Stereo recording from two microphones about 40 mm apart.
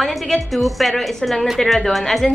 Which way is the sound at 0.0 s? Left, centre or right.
Centre.